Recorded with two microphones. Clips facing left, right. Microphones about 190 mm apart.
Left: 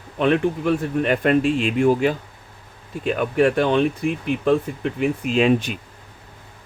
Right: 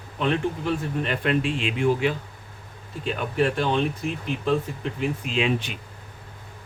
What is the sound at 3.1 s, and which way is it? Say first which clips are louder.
Speech: left 6 dB; 55° left (ahead or behind).